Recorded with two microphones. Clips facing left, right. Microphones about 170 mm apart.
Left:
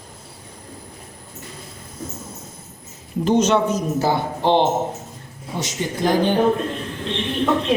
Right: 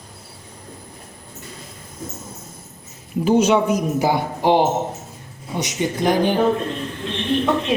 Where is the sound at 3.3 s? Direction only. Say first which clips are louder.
Right 1 dB; 10° right (ahead or behind).